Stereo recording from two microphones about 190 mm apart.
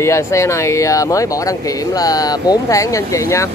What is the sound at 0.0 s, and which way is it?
Speech, 15° left (ahead or behind).